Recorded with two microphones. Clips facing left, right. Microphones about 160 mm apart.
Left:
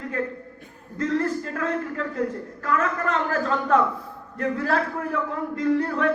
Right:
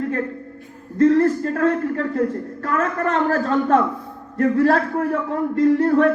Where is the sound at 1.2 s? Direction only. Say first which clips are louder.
Right 8 dB; 50° right (ahead or behind).